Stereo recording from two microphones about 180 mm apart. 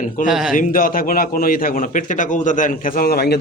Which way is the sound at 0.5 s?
50° left (ahead or behind).